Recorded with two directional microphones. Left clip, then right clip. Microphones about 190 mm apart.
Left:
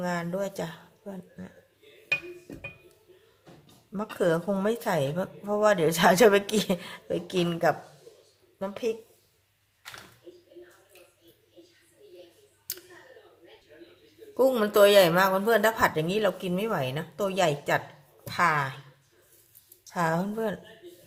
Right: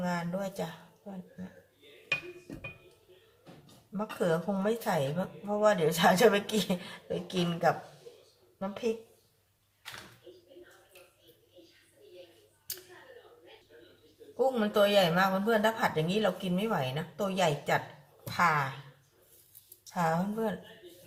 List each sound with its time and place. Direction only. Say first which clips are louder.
0.0 s a woman's voice: left 4 dB; 60° left (ahead or behind)
3.9 s a woman's voice: left 4 dB; 60° left (ahead or behind)
14.3 s a woman's voice: left 6 dB; 50° left (ahead or behind)
19.8 s a woman's voice: left 3 dB; 55° left (ahead or behind)